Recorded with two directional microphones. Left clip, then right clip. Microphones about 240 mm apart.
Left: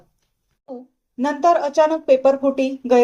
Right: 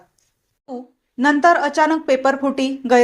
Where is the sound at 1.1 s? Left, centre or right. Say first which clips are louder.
Right 3 dB; centre.